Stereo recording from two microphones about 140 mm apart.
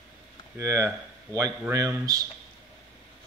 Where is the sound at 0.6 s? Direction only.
20° right (ahead or behind).